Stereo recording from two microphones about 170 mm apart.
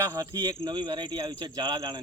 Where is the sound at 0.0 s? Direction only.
20° right (ahead or behind).